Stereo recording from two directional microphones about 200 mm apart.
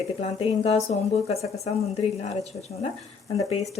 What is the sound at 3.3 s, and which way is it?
Speech, 30° left (ahead or behind).